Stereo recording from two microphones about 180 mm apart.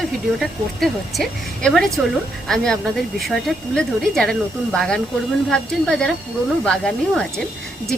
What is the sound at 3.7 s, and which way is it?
A woman's voice, 5° left (ahead or behind).